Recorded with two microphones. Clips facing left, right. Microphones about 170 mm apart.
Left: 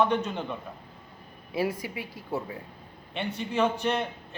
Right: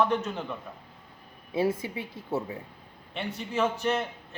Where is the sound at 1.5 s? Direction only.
25° right (ahead or behind).